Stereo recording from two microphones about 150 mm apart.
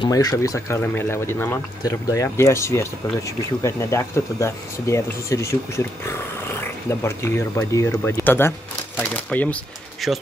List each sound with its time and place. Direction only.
0.1 s speech: 25° left (ahead or behind)
10.0 s speech: centre (ahead or behind)